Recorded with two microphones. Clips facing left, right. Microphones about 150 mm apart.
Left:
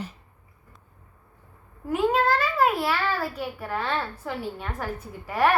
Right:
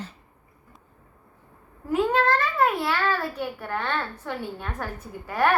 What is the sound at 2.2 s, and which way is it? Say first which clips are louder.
A child's voice: even; 5° left (ahead or behind).